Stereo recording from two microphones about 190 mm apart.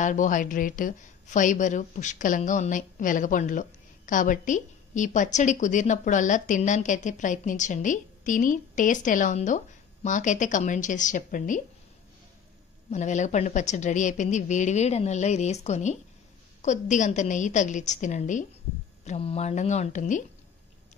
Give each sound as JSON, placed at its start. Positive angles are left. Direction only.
{"t": 0.0, "sound": "a woman's voice", "side_deg": 40}
{"t": 12.9, "sound": "a woman's voice", "side_deg": 40}